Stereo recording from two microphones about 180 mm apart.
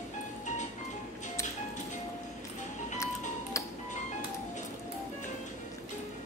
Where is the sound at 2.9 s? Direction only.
15° left (ahead or behind).